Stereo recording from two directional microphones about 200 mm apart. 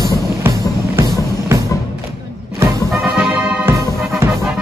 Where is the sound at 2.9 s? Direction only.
5° right (ahead or behind).